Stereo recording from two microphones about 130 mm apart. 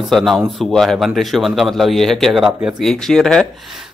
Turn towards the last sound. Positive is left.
turn(degrees=5)  # may be behind; listen again after turning